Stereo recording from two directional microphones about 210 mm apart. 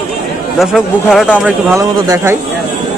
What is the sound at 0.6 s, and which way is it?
Speech, centre (ahead or behind).